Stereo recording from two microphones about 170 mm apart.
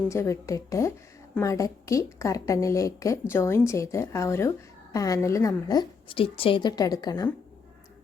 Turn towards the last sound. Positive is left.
turn(degrees=25)  # may be behind; listen again after turning